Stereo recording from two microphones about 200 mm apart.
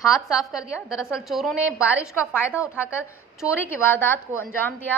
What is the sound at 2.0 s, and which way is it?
A woman's voice, 10° left (ahead or behind).